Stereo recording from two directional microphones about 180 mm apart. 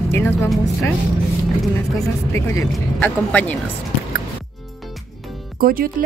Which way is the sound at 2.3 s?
15° left (ahead or behind).